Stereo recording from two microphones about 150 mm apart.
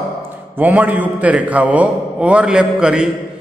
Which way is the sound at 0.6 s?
10° right (ahead or behind).